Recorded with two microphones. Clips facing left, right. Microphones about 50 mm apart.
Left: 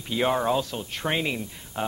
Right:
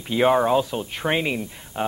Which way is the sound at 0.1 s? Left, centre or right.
Centre.